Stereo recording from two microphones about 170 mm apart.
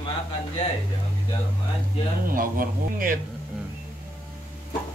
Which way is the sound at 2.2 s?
55° right (ahead or behind).